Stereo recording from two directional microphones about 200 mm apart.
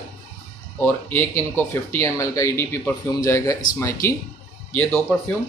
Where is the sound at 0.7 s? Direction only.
10° left (ahead or behind).